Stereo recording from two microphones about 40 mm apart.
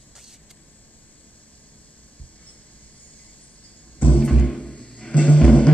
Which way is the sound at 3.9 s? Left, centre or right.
Left.